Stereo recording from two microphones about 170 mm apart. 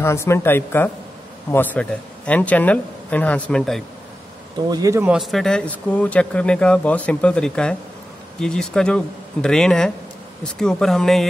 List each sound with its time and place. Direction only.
0.0 s a man's voice: 15° left (ahead or behind)
4.6 s speech: 25° right (ahead or behind)
5.0 s speech: 5° right (ahead or behind)